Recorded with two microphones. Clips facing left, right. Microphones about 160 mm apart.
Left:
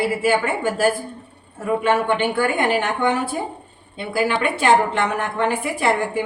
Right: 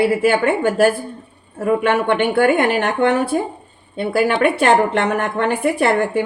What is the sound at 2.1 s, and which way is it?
A woman's voice, 60° right (ahead or behind).